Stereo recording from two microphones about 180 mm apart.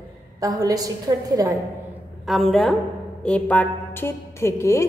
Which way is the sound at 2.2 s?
Centre (ahead or behind).